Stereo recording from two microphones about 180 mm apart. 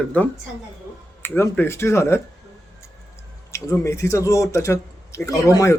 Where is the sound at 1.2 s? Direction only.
10° left (ahead or behind).